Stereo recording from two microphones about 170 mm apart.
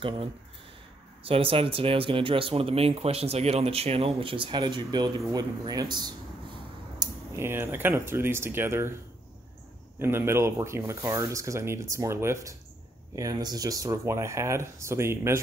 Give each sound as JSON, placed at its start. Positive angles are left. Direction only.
{"t": 1.2, "sound": "speech", "side_deg": -35}
{"t": 9.9, "sound": "speech", "side_deg": -15}